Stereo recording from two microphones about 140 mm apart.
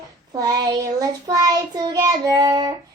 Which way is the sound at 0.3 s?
25° right (ahead or behind).